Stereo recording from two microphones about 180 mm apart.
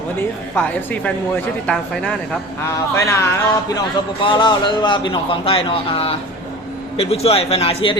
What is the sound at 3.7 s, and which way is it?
A man's voice, 25° left (ahead or behind).